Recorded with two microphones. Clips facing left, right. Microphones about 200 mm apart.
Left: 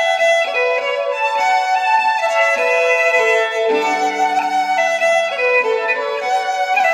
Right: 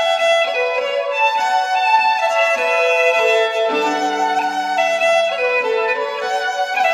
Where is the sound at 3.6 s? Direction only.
10° left (ahead or behind).